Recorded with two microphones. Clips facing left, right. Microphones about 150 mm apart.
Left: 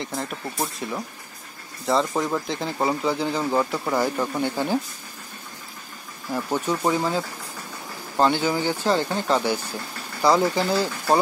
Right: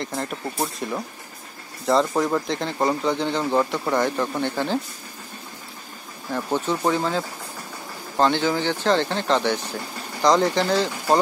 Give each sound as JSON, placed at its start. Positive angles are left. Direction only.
{"t": 0.0, "sound": "speech", "side_deg": 0}
{"t": 6.3, "sound": "speech", "side_deg": 10}